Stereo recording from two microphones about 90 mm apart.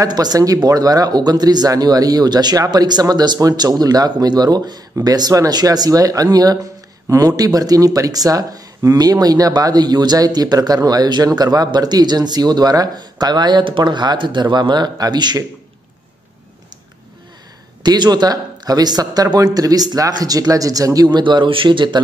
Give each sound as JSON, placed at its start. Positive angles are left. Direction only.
{"t": 0.0, "sound": "speech", "side_deg": -45}
{"t": 17.8, "sound": "speech", "side_deg": -55}
{"t": 21.2, "sound": "speech", "side_deg": -60}